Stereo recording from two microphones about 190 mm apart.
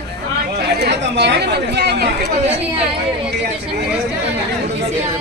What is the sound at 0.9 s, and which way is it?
Speech, 60° right (ahead or behind).